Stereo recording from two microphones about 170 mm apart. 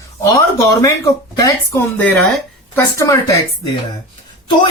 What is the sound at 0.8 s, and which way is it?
Speech, 20° left (ahead or behind).